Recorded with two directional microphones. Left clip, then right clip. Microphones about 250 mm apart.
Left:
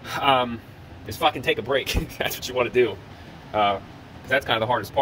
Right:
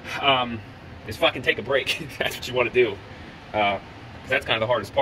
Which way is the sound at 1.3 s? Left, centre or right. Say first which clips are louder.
Even; centre.